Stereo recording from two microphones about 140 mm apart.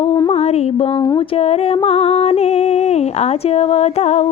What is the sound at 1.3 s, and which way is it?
Music, 45° left (ahead or behind).